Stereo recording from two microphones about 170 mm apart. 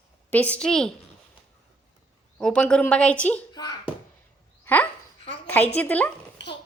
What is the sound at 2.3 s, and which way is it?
A woman's voice, 5° left (ahead or behind).